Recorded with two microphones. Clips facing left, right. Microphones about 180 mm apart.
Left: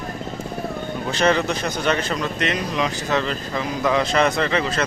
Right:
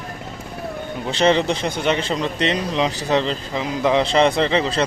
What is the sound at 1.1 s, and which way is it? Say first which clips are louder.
Speech: right 3 dB; 25° right (ahead or behind).